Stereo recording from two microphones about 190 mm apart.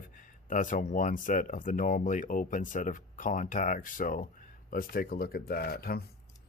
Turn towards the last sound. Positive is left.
turn(degrees=55)  # may be behind; listen again after turning